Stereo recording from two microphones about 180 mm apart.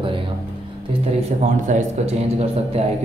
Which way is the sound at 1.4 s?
35° right (ahead or behind).